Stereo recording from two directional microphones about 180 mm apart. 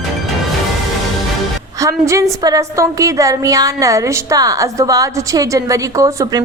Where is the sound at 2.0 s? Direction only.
15° right (ahead or behind).